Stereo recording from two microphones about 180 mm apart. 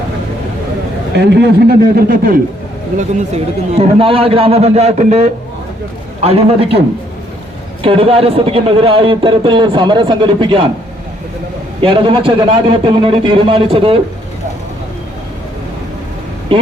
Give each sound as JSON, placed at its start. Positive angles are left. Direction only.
{"t": 1.1, "sound": "a man's voice", "side_deg": -70}
{"t": 3.2, "sound": "a man's voice", "side_deg": -35}
{"t": 7.9, "sound": "a man's voice", "side_deg": -30}
{"t": 11.8, "sound": "a man's voice", "side_deg": -30}